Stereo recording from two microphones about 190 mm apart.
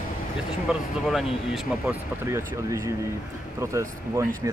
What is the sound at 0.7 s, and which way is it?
Speech, centre (ahead or behind).